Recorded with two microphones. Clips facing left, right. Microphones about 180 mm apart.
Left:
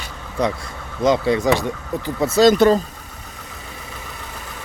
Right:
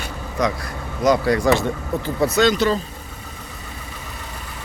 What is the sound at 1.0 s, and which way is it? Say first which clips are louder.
Speech: even; 25° left (ahead or behind).